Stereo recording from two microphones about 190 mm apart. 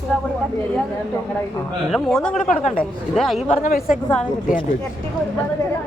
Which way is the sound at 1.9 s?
5° left (ahead or behind).